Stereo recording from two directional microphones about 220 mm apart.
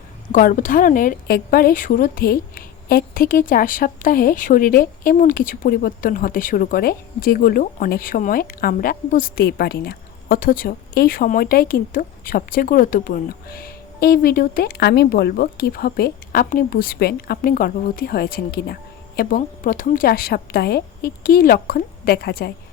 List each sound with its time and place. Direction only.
0.3 s speech: 35° left (ahead or behind)